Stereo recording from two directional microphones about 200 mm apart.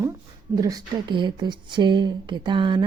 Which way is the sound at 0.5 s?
20° right (ahead or behind).